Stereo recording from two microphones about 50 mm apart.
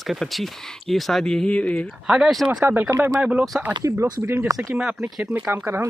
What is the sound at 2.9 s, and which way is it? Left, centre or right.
Speech, right.